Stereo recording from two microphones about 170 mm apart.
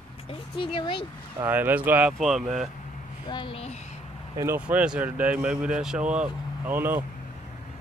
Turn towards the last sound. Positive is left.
turn(degrees=-10)  # may be behind; listen again after turning